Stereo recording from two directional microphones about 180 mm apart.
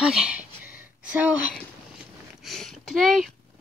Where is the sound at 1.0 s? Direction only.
5° right (ahead or behind).